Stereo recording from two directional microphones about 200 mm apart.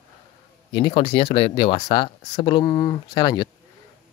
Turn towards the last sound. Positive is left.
turn(degrees=20)  # may be behind; listen again after turning